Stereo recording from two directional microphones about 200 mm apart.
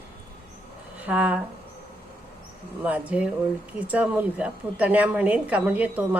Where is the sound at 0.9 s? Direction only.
5° right (ahead or behind).